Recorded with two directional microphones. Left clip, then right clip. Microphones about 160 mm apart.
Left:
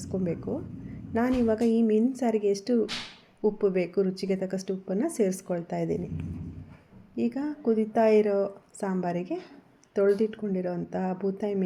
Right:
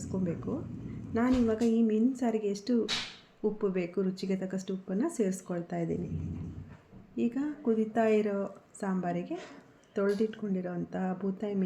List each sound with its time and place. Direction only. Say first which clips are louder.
0.0 s speech: left 4 dB; 35° left (ahead or behind)
7.2 s a woman's voice: left 3 dB; 30° left (ahead or behind)